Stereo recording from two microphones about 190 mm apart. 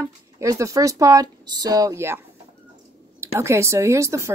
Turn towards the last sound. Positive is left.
turn(degrees=-15)  # may be behind; listen again after turning